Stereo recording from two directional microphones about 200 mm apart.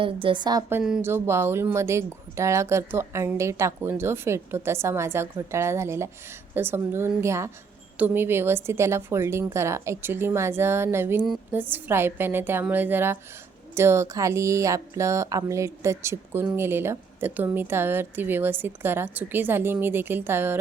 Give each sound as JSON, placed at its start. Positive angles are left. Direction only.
{"t": 0.0, "sound": "a woman's voice", "side_deg": -25}
{"t": 0.8, "sound": "speech", "side_deg": -5}